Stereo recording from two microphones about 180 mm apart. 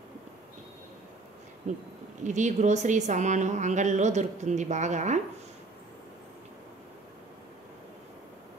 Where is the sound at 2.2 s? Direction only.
40° right (ahead or behind).